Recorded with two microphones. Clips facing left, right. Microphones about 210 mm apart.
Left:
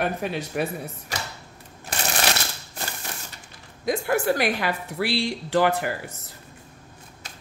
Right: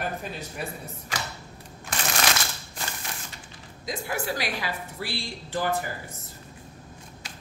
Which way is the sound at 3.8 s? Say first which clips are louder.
Left 8 dB; 55° left (ahead or behind).